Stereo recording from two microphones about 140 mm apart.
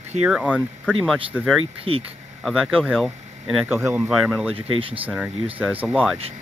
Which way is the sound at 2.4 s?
Centre (ahead or behind).